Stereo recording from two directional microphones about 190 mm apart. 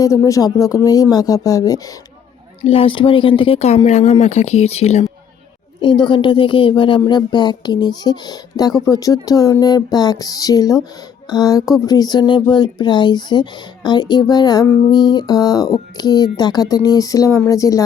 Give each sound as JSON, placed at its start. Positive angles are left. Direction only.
{"t": 0.0, "sound": "speech", "side_deg": 15}
{"t": 2.6, "sound": "speech", "side_deg": 30}